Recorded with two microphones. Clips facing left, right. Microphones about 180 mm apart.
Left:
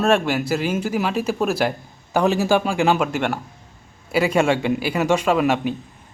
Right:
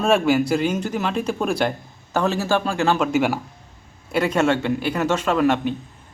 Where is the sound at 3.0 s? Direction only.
Centre (ahead or behind).